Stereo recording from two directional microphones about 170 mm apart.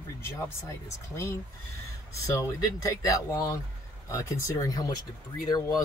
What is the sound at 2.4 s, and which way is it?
Speech, 20° left (ahead or behind).